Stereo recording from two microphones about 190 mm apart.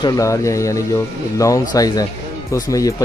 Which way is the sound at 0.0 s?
20° left (ahead or behind).